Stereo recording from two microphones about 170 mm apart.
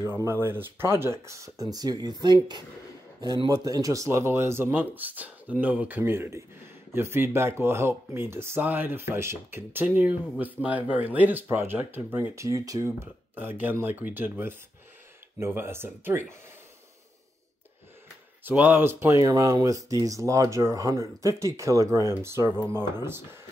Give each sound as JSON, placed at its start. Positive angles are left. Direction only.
{"t": 0.0, "sound": "speech", "side_deg": -15}
{"t": 18.4, "sound": "speech", "side_deg": -10}